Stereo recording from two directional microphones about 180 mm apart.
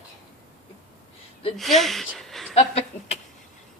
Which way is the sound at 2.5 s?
35° left (ahead or behind).